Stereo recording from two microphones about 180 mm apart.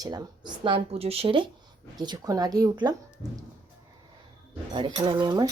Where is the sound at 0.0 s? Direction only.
20° right (ahead or behind).